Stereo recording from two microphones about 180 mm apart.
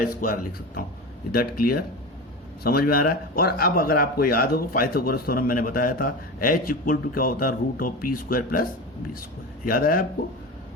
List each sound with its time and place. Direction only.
0.2 s speech: 55° left (ahead or behind)
9.6 s speech: 55° left (ahead or behind)